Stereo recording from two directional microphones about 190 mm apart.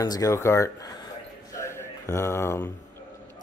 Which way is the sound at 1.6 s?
15° left (ahead or behind).